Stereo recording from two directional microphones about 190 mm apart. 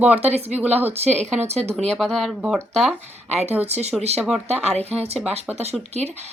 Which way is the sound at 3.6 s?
35° right (ahead or behind).